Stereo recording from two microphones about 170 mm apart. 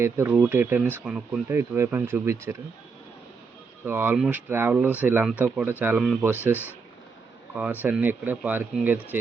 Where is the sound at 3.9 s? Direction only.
10° right (ahead or behind).